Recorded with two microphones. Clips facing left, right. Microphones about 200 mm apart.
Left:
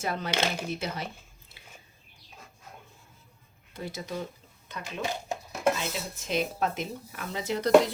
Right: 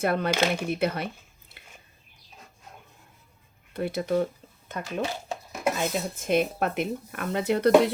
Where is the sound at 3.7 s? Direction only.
60° right (ahead or behind).